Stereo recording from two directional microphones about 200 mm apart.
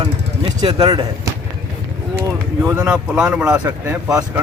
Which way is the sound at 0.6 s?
25° right (ahead or behind).